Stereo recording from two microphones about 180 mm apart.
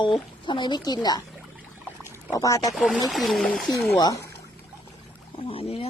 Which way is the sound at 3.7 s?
20° left (ahead or behind).